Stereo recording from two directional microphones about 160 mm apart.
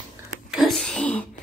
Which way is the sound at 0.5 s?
5° left (ahead or behind).